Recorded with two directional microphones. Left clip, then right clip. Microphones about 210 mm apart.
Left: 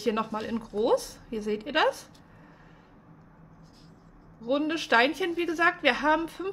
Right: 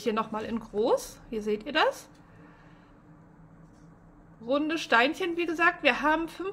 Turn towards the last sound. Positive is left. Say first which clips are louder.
# left 1 dB
turn(degrees=0)  # may be behind; listen again after turning